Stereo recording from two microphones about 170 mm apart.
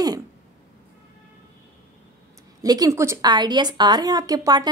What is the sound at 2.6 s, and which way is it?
A woman's voice, 20° right (ahead or behind).